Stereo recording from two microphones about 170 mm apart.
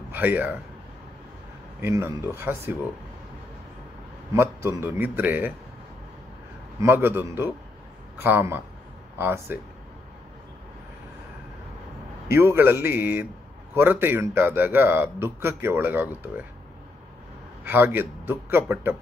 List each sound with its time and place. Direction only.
0.1 s a man's voice: 10° right (ahead or behind)
1.8 s a man's voice: 15° right (ahead or behind)
4.3 s a man's voice: 15° right (ahead or behind)
6.8 s a man's voice: 15° right (ahead or behind)
12.3 s a man's voice: 15° right (ahead or behind)
17.6 s a man's voice: 10° right (ahead or behind)